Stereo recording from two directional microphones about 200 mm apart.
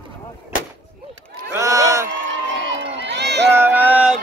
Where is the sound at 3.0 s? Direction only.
60° right (ahead or behind).